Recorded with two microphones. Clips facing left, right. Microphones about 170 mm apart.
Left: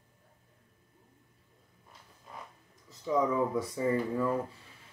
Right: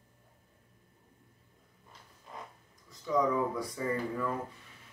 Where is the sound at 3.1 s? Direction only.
25° left (ahead or behind).